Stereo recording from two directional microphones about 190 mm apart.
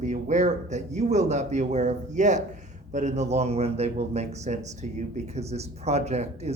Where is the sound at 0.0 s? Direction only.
40° right (ahead or behind).